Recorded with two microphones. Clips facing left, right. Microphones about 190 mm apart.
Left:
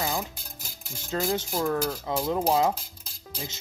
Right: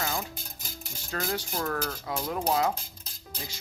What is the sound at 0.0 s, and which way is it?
Music, 25° left (ahead or behind).